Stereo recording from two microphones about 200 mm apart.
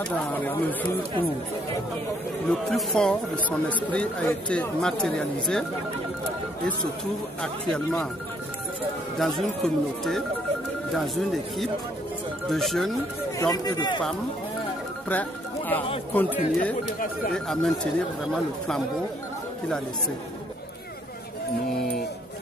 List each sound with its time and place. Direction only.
0.0 s speech: 10° left (ahead or behind)
2.5 s speech: centre (ahead or behind)
7.4 s speech: 5° left (ahead or behind)
9.2 s speech: centre (ahead or behind)
13.4 s speech: 20° left (ahead or behind)
15.0 s speech: 10° left (ahead or behind)